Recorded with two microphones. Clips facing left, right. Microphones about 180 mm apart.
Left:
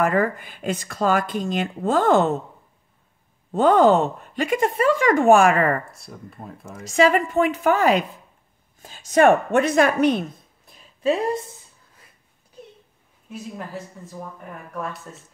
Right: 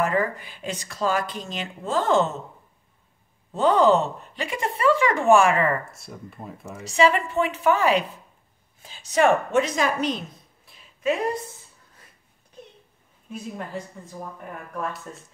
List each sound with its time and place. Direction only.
0.0 s speech: 50° left (ahead or behind)
3.5 s speech: 50° left (ahead or behind)
5.9 s speech: centre (ahead or behind)
6.9 s a woman's voice: 45° left (ahead or behind)
10.7 s a sound: 30° left (ahead or behind)
13.3 s speech: 5° left (ahead or behind)
15.1 s speech: centre (ahead or behind)